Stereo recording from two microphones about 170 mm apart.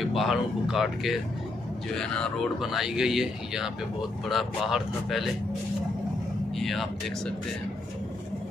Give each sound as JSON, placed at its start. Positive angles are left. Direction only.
{"t": 0.0, "sound": "speech", "side_deg": 0}
{"t": 6.5, "sound": "speech", "side_deg": 0}